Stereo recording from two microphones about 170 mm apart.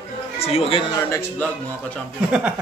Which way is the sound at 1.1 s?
15° left (ahead or behind).